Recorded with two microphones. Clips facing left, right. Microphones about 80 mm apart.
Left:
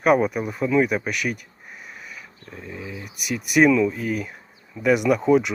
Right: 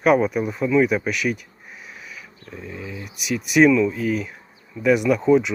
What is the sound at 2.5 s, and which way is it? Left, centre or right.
Dog, centre.